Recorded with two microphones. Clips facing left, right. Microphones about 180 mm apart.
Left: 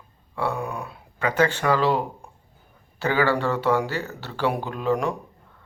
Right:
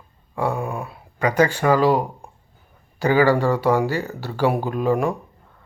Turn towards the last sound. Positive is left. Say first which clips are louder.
# right 4 dB
turn(degrees=-10)  # may be behind; listen again after turning